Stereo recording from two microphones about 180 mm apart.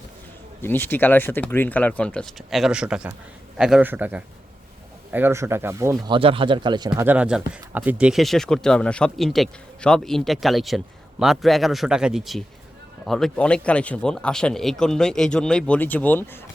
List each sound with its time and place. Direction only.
0.6 s speech: 10° left (ahead or behind); by 6.0 s 15° right (ahead or behind)
6.1 s speech: 30° right (ahead or behind)
7.1 s speech: 5° right (ahead or behind); by 16.4 s 10° left (ahead or behind)